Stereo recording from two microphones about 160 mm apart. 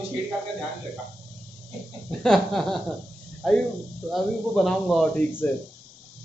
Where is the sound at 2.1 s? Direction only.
Centre (ahead or behind).